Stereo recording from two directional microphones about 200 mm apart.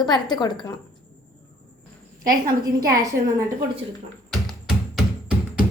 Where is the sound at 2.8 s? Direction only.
15° right (ahead or behind).